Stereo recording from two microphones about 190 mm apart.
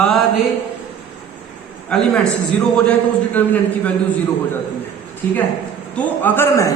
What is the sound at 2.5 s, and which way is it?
A man's voice, 5° left (ahead or behind).